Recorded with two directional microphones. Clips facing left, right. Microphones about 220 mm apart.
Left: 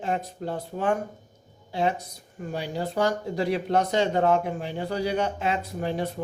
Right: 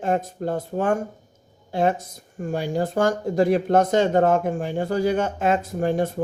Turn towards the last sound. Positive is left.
turn(degrees=-50)  # may be behind; listen again after turning